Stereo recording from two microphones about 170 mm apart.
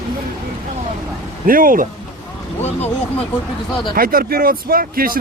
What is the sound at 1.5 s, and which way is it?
Speech, 55° right (ahead or behind).